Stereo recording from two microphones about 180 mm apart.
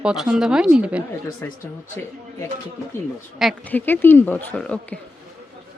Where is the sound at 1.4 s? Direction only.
15° left (ahead or behind).